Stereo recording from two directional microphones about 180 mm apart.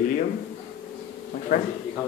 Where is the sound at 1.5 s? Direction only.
50° left (ahead or behind).